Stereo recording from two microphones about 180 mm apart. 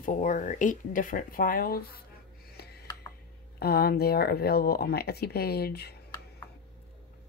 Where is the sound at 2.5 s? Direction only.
60° left (ahead or behind).